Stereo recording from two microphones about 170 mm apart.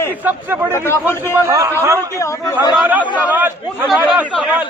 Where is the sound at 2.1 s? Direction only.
15° left (ahead or behind).